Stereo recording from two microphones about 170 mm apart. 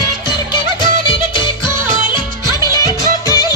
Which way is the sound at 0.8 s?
25° left (ahead or behind).